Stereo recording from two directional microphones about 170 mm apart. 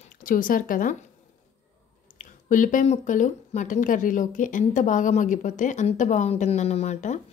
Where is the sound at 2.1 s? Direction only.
50° left (ahead or behind).